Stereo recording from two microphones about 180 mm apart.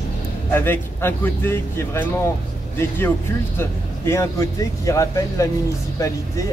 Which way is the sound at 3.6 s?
15° left (ahead or behind).